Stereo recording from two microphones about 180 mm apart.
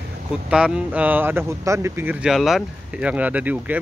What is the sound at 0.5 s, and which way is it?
Speech, 5° right (ahead or behind).